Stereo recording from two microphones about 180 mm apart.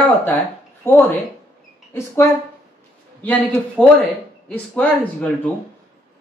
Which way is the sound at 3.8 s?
5° left (ahead or behind).